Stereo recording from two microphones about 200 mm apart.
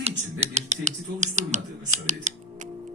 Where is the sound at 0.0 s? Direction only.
30° right (ahead or behind).